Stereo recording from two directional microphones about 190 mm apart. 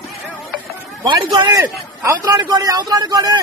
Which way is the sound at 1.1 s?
25° right (ahead or behind).